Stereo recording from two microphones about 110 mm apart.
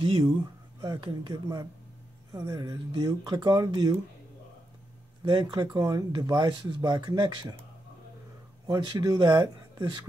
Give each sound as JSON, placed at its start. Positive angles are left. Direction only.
{"t": 0.0, "sound": "speech", "side_deg": -50}
{"t": 5.2, "sound": "speech", "side_deg": -45}
{"t": 8.6, "sound": "speech", "side_deg": -40}